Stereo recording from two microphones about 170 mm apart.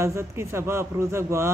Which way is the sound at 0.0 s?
15° right (ahead or behind).